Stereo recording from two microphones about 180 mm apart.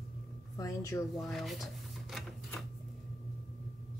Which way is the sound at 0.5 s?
20° left (ahead or behind).